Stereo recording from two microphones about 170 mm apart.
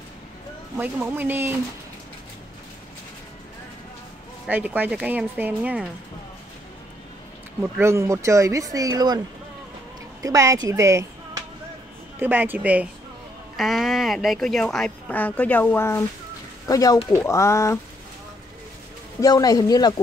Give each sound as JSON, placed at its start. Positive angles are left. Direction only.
{"t": 0.7, "sound": "speech", "side_deg": -10}
{"t": 4.5, "sound": "speech", "side_deg": -10}
{"t": 7.6, "sound": "speech", "side_deg": -15}
{"t": 10.2, "sound": "a man's voice", "side_deg": -20}
{"t": 19.2, "sound": "a man's voice", "side_deg": 20}